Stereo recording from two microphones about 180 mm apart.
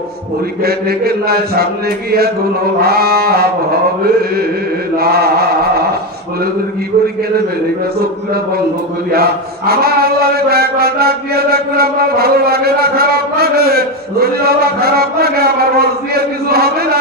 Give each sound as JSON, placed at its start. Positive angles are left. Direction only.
{"t": 0.6, "sound": "mantra", "side_deg": -60}
{"t": 9.1, "sound": "mantra", "side_deg": -60}